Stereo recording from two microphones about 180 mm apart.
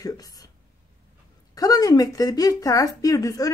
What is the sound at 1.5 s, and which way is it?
Speech, 20° left (ahead or behind).